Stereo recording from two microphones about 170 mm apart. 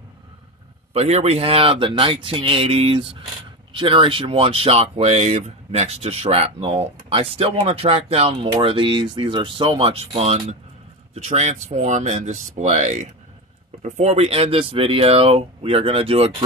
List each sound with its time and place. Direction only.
0.9 s speech: 40° right (ahead or behind)